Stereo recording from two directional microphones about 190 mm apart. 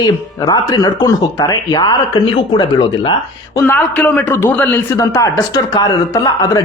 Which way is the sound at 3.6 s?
10° left (ahead or behind).